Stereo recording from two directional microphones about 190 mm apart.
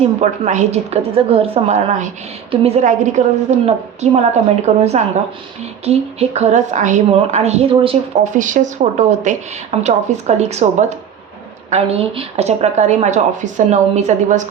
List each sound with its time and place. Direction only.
0.0 s a woman's voice: 35° right (ahead or behind)
8.2 s a woman's voice: 40° right (ahead or behind)